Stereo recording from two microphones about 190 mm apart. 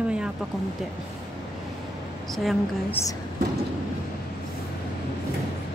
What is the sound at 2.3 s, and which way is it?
Speech, centre (ahead or behind).